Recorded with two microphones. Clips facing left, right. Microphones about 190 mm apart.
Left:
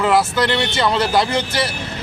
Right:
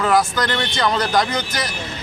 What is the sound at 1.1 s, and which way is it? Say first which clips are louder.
Speech: left 2 dB; 30° left (ahead or behind).